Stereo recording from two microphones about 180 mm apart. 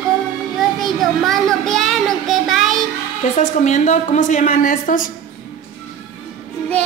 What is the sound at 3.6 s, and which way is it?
A woman's voice, 40° left (ahead or behind).